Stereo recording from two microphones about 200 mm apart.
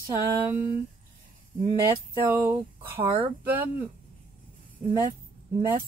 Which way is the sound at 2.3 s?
10° right (ahead or behind).